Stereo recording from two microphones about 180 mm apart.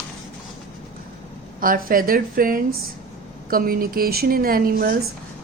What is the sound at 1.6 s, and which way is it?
Speech, 50° right (ahead or behind).